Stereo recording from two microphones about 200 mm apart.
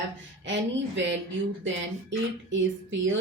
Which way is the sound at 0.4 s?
65° right (ahead or behind).